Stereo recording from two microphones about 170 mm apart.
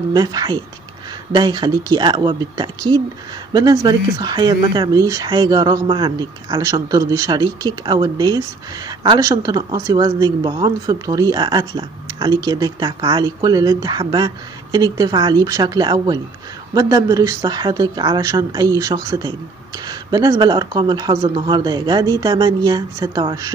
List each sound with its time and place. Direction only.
0.1 s speech: 20° right (ahead or behind)